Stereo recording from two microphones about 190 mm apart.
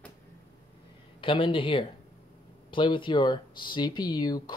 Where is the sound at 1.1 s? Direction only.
25° left (ahead or behind).